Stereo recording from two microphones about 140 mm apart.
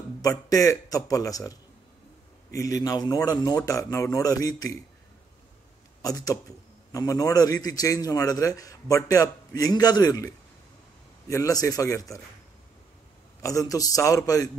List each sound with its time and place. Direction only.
0.2 s a man's voice: 25° left (ahead or behind)
6.0 s a man's voice: 25° left (ahead or behind)
13.4 s a man's voice: 25° left (ahead or behind)